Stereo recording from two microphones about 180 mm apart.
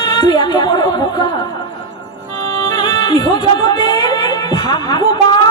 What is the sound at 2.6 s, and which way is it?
Music, 25° left (ahead or behind).